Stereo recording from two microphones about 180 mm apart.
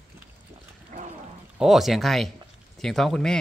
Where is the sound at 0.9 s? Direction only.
45° right (ahead or behind).